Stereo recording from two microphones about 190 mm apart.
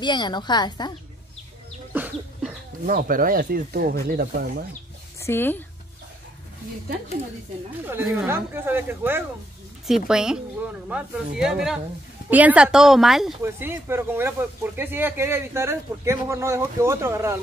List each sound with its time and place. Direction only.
0.0 s a woman's voice: 25° left (ahead or behind)
2.0 s bird: 10° right (ahead or behind)
2.9 s speech: 50° right (ahead or behind)
5.2 s speech: 10° left (ahead or behind)
7.8 s a woman's voice: 10° right (ahead or behind)
13.4 s speech: 10° right (ahead or behind)